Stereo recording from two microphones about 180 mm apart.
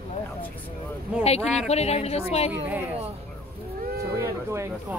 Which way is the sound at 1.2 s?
35° left (ahead or behind).